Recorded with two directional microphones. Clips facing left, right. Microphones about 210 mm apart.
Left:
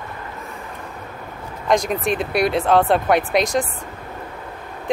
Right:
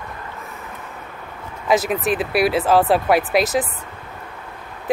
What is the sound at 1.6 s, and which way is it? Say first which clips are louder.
Speech: even; 5° right (ahead or behind).